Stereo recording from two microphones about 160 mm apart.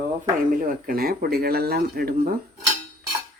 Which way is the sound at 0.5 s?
60° right (ahead or behind).